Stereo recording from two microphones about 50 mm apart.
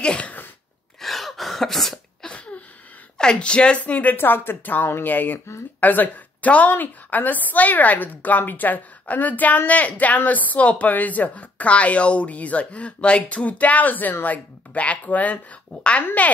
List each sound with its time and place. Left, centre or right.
0.0 s sneeze: centre
1.0 s cough: centre
2.2 s a sound: left
3.2 s a woman's voice: centre